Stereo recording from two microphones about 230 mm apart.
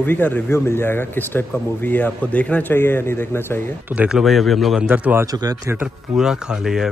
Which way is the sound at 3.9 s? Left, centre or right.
Centre.